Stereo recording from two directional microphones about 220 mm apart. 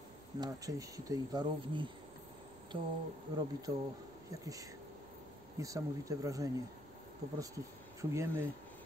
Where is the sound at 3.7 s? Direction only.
15° right (ahead or behind).